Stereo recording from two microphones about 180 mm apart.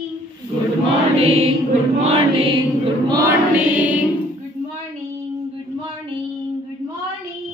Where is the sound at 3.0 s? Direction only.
20° right (ahead or behind).